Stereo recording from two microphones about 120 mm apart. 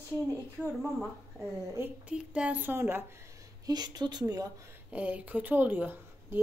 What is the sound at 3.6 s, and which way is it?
Speech, 35° right (ahead or behind).